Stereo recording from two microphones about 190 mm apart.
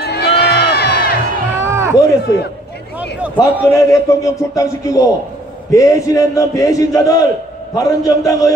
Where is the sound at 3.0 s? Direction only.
5° right (ahead or behind).